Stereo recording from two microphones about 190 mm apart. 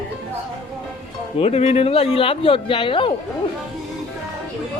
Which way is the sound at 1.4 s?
35° left (ahead or behind).